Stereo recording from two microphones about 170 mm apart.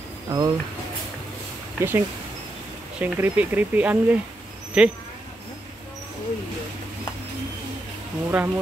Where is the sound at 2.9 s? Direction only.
10° right (ahead or behind).